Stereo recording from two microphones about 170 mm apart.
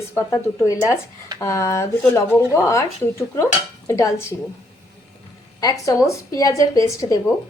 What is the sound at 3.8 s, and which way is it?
Speech, 20° left (ahead or behind).